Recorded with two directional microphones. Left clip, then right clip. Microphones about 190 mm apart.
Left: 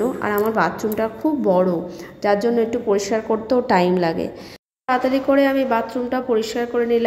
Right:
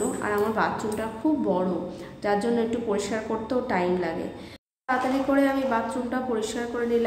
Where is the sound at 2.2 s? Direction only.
30° left (ahead or behind).